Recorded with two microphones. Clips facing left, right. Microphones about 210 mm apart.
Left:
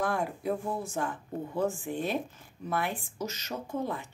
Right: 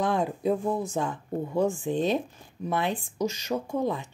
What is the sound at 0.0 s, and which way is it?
A woman's voice, 20° right (ahead or behind).